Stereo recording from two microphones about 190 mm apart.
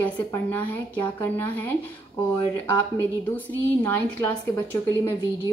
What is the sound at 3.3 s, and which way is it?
A woman's voice, 10° left (ahead or behind).